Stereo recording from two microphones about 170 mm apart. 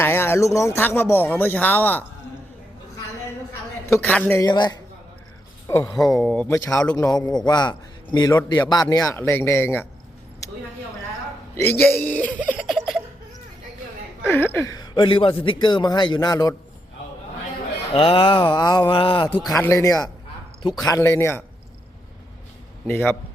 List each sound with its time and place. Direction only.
0.0 s speech: 15° left (ahead or behind)
3.8 s speech: 10° left (ahead or behind)
4.4 s a man's voice: 25° left (ahead or behind)
6.2 s speech: 10° left (ahead or behind)
6.9 s a man's voice: 20° left (ahead or behind)
11.5 s speech: 10° left (ahead or behind)
12.5 s giggle: centre (ahead or behind)
14.3 s a man's voice: 10° left (ahead or behind)
17.9 s a man's voice: 35° left (ahead or behind)
19.5 s a man's voice: 20° left (ahead or behind)
22.9 s speech: 10° left (ahead or behind)